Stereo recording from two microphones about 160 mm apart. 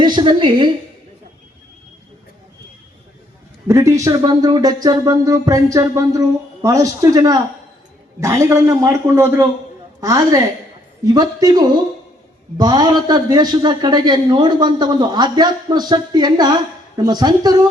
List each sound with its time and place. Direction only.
0.0 s a woman's voice: 30° right (ahead or behind)
3.7 s a man's voice: 20° right (ahead or behind)